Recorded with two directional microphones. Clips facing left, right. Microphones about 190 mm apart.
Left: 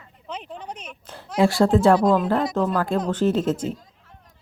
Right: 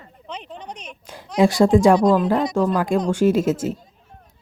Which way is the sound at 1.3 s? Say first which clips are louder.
Right 3 dB; 15° right (ahead or behind).